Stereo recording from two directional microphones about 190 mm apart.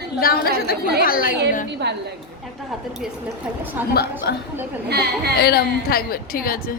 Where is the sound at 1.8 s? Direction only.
60° right (ahead or behind).